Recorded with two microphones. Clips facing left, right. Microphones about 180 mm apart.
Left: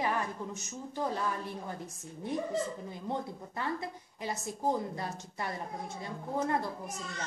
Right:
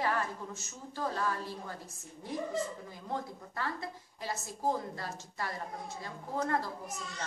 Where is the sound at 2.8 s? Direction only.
20° left (ahead or behind).